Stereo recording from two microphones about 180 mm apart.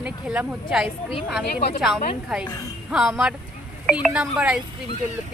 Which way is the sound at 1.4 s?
65° left (ahead or behind).